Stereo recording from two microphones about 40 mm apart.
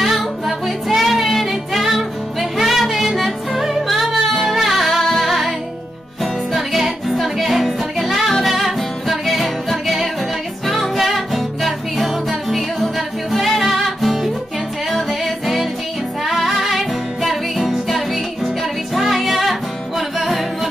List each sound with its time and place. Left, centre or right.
0.0 s music: centre
6.5 s music: centre